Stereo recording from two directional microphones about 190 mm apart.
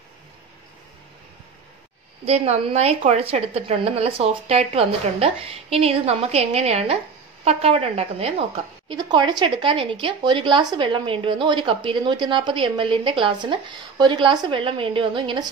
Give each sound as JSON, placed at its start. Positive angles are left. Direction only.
{"t": 2.2, "sound": "a woman's voice", "side_deg": -35}